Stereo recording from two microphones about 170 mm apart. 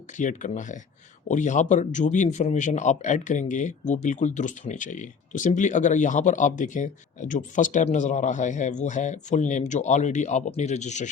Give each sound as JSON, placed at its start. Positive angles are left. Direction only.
{"t": 0.2, "sound": "speech", "side_deg": 45}